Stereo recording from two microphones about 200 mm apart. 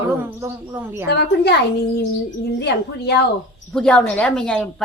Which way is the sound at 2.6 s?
55° left (ahead or behind).